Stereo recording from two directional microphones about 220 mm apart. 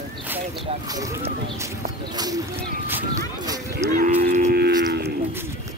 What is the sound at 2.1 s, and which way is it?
Speech, 15° right (ahead or behind).